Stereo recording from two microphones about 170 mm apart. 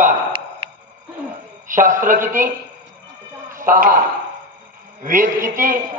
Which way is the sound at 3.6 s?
55° right (ahead or behind).